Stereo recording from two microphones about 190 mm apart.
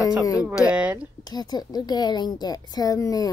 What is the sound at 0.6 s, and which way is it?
Speech, 5° right (ahead or behind).